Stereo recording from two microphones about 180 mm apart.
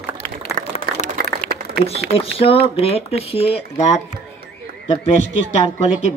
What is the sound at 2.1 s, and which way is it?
A man's voice, 30° left (ahead or behind).